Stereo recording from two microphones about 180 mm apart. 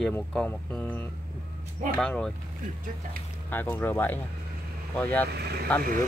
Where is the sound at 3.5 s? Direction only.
10° left (ahead or behind).